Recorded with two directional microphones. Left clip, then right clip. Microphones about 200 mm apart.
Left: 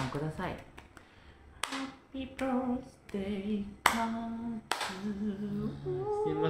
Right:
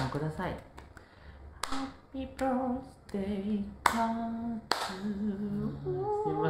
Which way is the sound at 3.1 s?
5° right (ahead or behind).